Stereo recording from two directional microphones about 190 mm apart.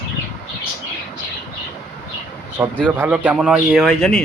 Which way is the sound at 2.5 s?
10° right (ahead or behind).